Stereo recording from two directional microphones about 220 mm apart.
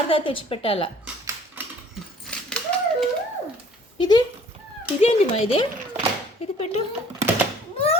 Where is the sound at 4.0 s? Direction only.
20° left (ahead or behind).